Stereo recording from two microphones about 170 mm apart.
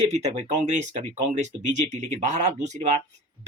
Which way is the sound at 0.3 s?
40° right (ahead or behind).